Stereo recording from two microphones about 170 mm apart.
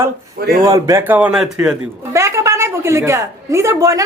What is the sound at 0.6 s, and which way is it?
A woman's voice, 20° right (ahead or behind).